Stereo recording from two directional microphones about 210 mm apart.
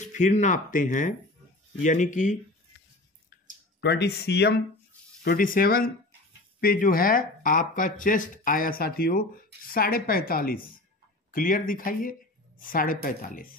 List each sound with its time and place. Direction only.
0.0 s speech: 35° left (ahead or behind)
3.8 s a woman's voice: 50° left (ahead or behind)